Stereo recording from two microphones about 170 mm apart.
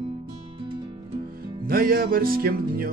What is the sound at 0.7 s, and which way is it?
Music, 25° right (ahead or behind).